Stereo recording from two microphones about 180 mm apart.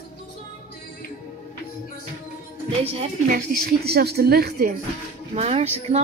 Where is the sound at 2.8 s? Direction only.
35° right (ahead or behind).